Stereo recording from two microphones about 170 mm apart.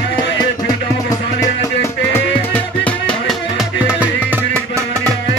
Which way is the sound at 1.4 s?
15° left (ahead or behind).